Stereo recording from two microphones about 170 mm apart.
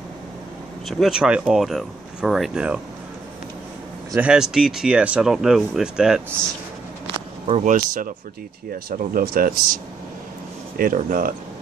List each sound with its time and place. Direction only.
0.8 s speech: centre (ahead or behind)
4.1 s speech: 5° right (ahead or behind)
7.2 s a sound: 35° right (ahead or behind)
7.6 s speech: 50° right (ahead or behind)
10.8 s speech: 55° right (ahead or behind)